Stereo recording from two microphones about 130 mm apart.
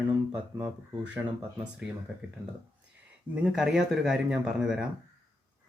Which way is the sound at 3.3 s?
5° right (ahead or behind).